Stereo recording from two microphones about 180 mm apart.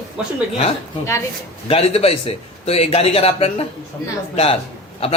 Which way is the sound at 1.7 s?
35° left (ahead or behind).